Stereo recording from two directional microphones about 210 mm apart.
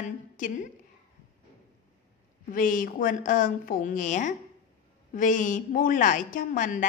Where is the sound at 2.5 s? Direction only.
40° left (ahead or behind).